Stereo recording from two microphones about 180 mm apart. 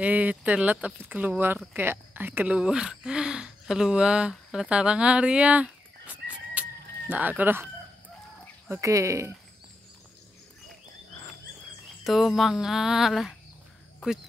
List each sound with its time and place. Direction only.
0.0 s speech: 10° right (ahead or behind)
12.0 s speech: centre (ahead or behind)
13.9 s a sound: centre (ahead or behind)